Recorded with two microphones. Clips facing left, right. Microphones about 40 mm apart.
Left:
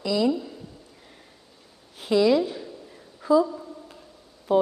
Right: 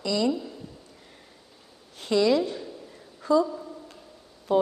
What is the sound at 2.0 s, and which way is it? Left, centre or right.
Speech, centre.